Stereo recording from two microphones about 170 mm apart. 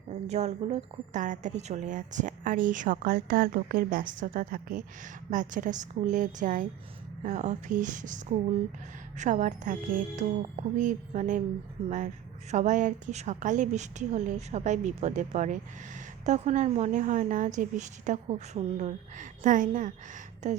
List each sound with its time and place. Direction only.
0.3 s a woman's voice: 40° right (ahead or behind)